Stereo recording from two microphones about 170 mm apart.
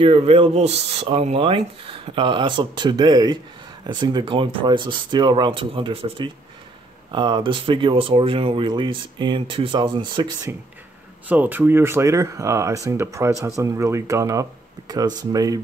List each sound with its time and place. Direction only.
0.0 s speech: 30° right (ahead or behind)
11.2 s speech: 10° right (ahead or behind)